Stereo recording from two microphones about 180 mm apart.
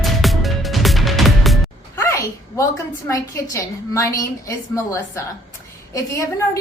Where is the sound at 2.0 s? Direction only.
15° left (ahead or behind).